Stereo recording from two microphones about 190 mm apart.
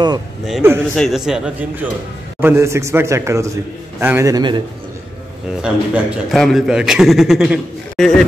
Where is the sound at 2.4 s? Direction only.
15° right (ahead or behind).